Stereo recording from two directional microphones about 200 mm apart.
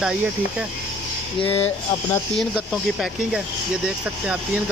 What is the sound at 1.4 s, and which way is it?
Speech, 30° left (ahead or behind).